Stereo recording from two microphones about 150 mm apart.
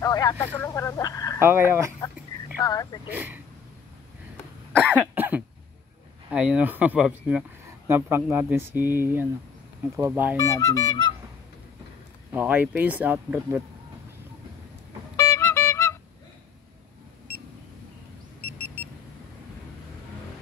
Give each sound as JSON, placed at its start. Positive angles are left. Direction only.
{"t": 0.0, "sound": "speech", "side_deg": 25}
{"t": 0.6, "sound": "telephone", "side_deg": 20}
{"t": 1.4, "sound": "speech", "side_deg": -15}
{"t": 2.6, "sound": "speech", "side_deg": 25}
{"t": 3.1, "sound": "speech", "side_deg": -10}
{"t": 4.7, "sound": "cough", "side_deg": 10}
{"t": 5.1, "sound": "cough", "side_deg": -10}
{"t": 6.3, "sound": "speech", "side_deg": -10}
{"t": 10.3, "sound": "speech", "side_deg": 20}
{"t": 12.3, "sound": "speech", "side_deg": -10}
{"t": 15.1, "sound": "music", "side_deg": 20}